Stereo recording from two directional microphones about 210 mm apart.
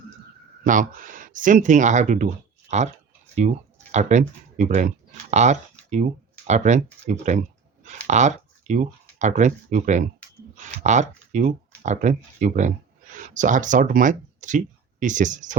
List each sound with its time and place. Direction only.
0.6 s speech: 40° right (ahead or behind)